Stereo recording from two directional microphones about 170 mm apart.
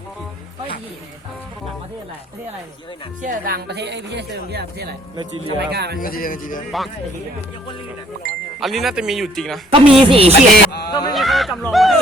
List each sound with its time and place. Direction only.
3.2 s speech: 50° right (ahead or behind); by 4.9 s 70° right (ahead or behind)
5.1 s speech: 25° right (ahead or behind)
5.5 s speech: 75° right (ahead or behind)
6.0 s speech: 60° left (ahead or behind)
6.7 s speech: centre (ahead or behind)
8.6 s speech: centre (ahead or behind)
9.6 s speech: 30° right (ahead or behind)
10.7 s speech: 70° left (ahead or behind)
11.1 s speech: centre (ahead or behind)